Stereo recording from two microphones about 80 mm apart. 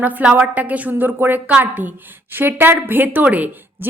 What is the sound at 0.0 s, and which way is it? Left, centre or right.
A woman's voice, centre.